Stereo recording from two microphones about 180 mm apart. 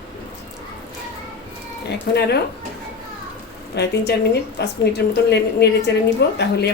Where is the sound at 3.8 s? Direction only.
65° left (ahead or behind).